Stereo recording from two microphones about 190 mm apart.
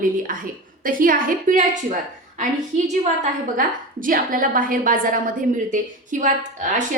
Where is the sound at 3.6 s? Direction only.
45° right (ahead or behind).